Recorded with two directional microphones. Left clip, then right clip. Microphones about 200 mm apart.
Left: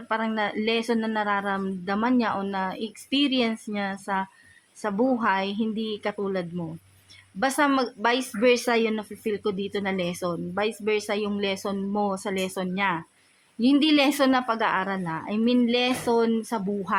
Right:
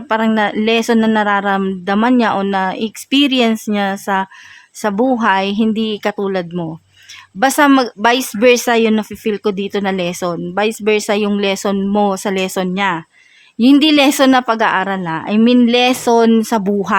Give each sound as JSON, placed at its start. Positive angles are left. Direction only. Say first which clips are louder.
{"t": 0.1, "sound": "speech", "louder": "right 11 dB", "side_deg": -45}